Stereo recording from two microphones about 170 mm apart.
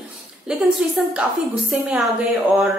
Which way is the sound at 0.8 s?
5° right (ahead or behind).